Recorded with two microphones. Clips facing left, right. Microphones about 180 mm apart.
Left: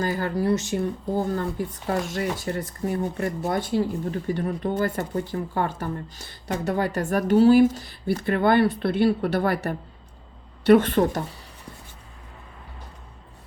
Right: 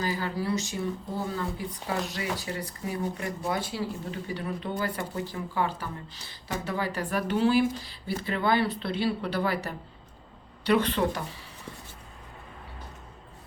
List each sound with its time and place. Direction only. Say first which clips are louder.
0.0 s speech: left 6 dB; 55° left (ahead or behind)